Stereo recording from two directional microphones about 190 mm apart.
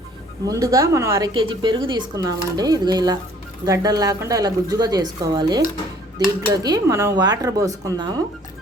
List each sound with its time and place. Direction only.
0.4 s speech: 15° right (ahead or behind)